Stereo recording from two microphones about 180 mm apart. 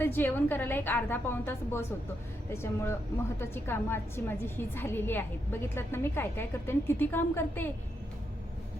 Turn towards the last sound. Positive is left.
turn(degrees=10)  # may be behind; listen again after turning